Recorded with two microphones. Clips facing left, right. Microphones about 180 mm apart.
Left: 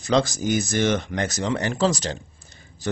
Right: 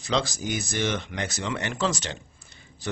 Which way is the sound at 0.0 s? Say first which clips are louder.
Left 6 dB; 45° left (ahead or behind).